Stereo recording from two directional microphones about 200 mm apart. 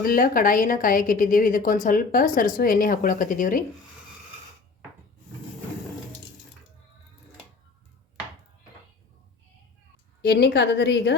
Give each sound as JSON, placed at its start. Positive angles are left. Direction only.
{"t": 0.0, "sound": "a woman's voice", "side_deg": 45}
{"t": 10.2, "sound": "a woman's voice", "side_deg": 55}